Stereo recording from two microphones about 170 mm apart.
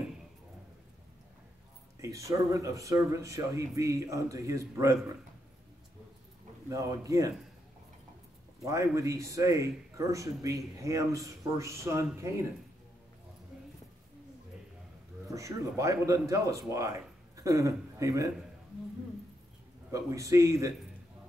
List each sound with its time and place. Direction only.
2.0 s speech: 20° right (ahead or behind)
6.7 s speech: 20° right (ahead or behind)
8.6 s a man's voice: 20° right (ahead or behind)
15.3 s a man's voice: 20° right (ahead or behind)
19.9 s speech: 20° right (ahead or behind)